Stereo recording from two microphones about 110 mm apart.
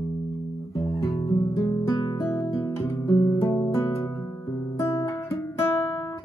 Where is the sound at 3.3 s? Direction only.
25° left (ahead or behind).